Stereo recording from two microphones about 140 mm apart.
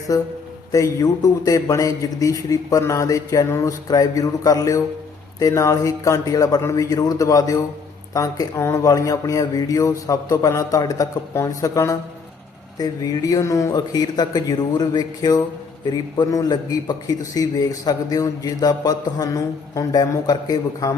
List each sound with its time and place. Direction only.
0.1 s a man's voice: 25° left (ahead or behind)